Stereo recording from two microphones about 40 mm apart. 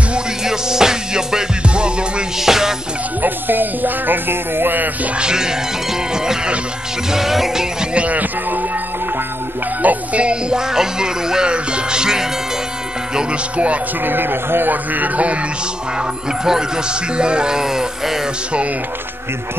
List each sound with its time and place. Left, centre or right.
0.4 s music: centre
2.3 s music: centre
3.2 s music: right
5.1 s music: centre
7.9 s music: right
9.8 s music: right
10.2 s music: centre
14.0 s speech: right
14.7 s a man's voice: right
16.0 s speech: centre